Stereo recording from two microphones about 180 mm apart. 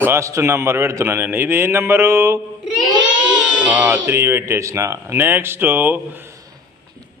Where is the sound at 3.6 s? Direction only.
10° right (ahead or behind).